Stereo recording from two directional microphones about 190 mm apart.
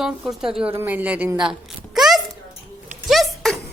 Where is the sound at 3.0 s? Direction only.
Centre (ahead or behind).